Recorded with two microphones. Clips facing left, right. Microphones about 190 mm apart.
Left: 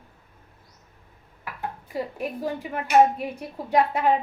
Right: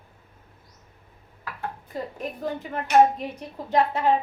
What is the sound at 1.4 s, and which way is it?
A woman's voice, 15° left (ahead or behind).